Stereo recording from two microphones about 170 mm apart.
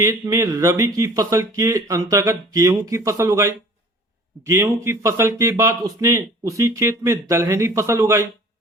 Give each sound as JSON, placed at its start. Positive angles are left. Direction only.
{"t": 0.0, "sound": "speech", "side_deg": -20}